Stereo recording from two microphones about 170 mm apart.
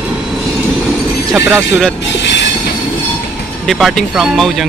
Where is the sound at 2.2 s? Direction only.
90° left.